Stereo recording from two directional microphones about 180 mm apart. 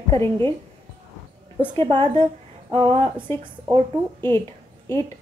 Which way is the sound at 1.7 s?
25° right (ahead or behind).